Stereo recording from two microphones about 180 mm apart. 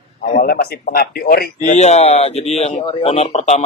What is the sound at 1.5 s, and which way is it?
Speech, 40° left (ahead or behind).